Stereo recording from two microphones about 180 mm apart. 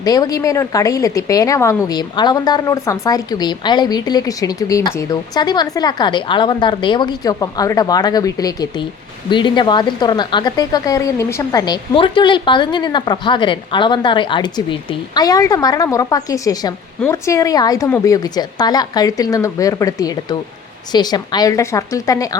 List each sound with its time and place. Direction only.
0.0 s speech: 20° left (ahead or behind)